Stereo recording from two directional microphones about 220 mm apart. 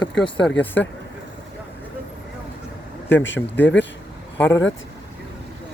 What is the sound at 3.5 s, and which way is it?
Speech, 10° left (ahead or behind).